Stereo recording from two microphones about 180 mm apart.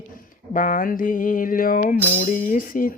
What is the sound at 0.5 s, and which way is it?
Mantra, 50° left (ahead or behind).